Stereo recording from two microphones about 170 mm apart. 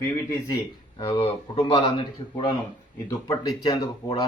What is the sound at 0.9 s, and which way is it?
A man's voice, 30° left (ahead or behind).